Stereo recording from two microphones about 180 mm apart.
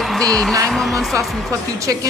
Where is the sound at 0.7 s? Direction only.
Centre (ahead or behind).